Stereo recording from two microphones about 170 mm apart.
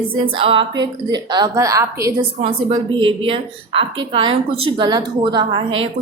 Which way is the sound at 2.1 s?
30° right (ahead or behind).